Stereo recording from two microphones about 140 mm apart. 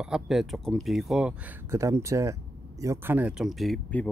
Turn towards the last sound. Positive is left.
turn(degrees=0)  # may be behind; listen again after turning